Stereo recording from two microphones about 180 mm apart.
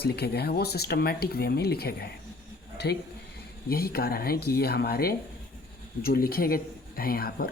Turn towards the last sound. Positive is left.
turn(degrees=55)  # may be behind; listen again after turning